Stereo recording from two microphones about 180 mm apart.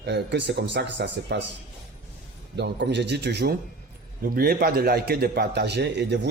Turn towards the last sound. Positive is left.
turn(degrees=-70)  # may be behind; listen again after turning